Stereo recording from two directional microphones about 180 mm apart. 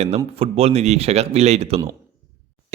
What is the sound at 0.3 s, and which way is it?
A man's voice, 35° right (ahead or behind).